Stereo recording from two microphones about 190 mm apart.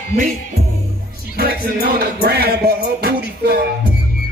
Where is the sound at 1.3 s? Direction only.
55° right (ahead or behind).